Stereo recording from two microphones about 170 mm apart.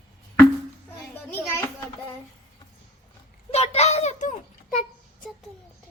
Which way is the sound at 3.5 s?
40° left (ahead or behind).